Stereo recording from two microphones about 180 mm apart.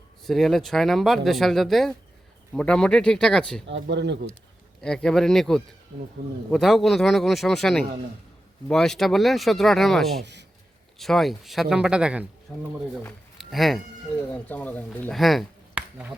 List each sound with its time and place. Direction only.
0.3 s speech: centre (ahead or behind)
3.7 s speech: 80° right
4.8 s speech: 5° left (ahead or behind)
10.2 s speech: 70° right (ahead or behind)
10.9 s speech: centre (ahead or behind)
13.4 s speech: centre (ahead or behind)